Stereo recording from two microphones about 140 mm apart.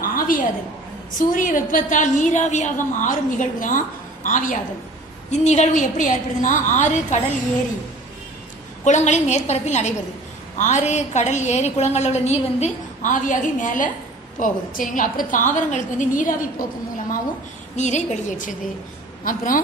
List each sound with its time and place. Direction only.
0.0 s a sound: 90° left
1.1 s a woman's voice: 70° left (ahead or behind)
5.3 s a woman's voice: 55° left (ahead or behind)
8.8 s a woman's voice: 55° left (ahead or behind)
17.7 s a woman's voice: 55° left (ahead or behind)
19.2 s a woman's voice: 75° left (ahead or behind)